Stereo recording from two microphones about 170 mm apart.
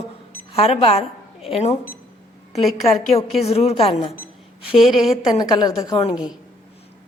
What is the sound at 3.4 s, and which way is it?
Speech, 35° left (ahead or behind).